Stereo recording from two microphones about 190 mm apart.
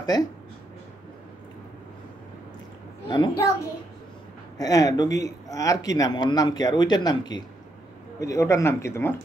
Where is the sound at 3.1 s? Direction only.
25° left (ahead or behind).